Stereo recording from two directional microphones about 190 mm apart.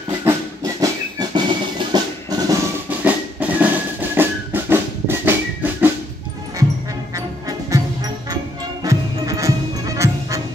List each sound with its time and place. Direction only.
0.1 s music: 15° right (ahead or behind)
2.9 s music: 10° right (ahead or behind)
7.2 s music: 20° right (ahead or behind)